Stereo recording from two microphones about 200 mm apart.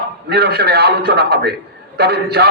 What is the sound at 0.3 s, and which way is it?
A man's voice, 55° right (ahead or behind).